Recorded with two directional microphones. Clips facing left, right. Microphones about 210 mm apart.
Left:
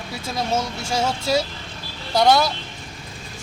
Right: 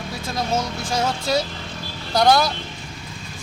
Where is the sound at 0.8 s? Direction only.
25° left (ahead or behind).